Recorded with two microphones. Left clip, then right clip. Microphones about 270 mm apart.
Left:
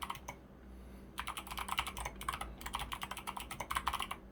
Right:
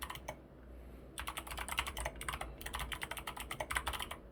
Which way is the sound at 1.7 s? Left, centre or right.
Centre.